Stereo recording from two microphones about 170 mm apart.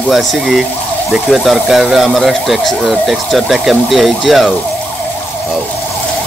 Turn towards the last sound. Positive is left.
turn(degrees=0)  # may be behind; listen again after turning